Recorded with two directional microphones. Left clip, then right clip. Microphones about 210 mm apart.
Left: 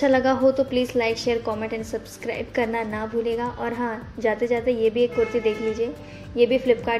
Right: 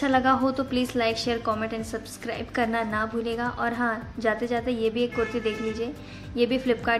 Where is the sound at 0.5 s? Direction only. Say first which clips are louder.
Left 6 dB; 45° right (ahead or behind).